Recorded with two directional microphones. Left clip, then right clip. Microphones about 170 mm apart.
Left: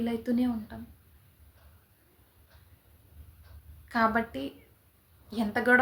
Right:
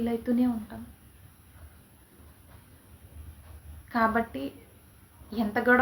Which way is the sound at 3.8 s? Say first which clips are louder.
Right 1 dB; 5° left (ahead or behind).